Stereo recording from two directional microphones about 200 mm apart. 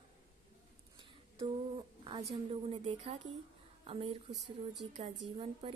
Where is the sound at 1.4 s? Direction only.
25° right (ahead or behind).